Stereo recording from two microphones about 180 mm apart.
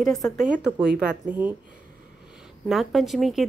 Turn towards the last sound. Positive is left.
turn(degrees=0)  # may be behind; listen again after turning